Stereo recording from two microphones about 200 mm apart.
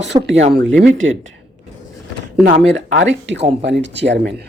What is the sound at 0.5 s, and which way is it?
Speech, 65° right (ahead or behind).